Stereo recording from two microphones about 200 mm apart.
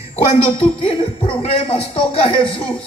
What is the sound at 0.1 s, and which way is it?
Speech, 25° left (ahead or behind).